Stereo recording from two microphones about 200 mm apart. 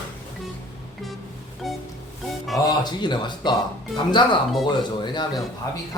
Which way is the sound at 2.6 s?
20° left (ahead or behind).